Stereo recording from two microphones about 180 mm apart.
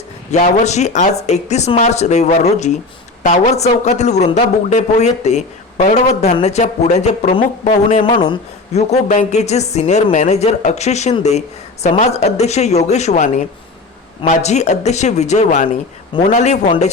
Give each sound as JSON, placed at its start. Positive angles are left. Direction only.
{"t": 0.3, "sound": "a woman's voice", "side_deg": 40}
{"t": 7.9, "sound": "a woman's voice", "side_deg": 30}